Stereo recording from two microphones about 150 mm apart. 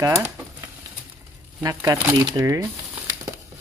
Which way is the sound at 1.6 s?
20° right (ahead or behind).